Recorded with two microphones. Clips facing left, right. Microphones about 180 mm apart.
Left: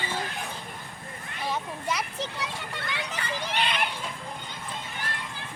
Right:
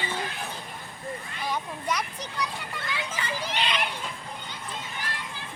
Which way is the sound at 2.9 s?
55° left (ahead or behind).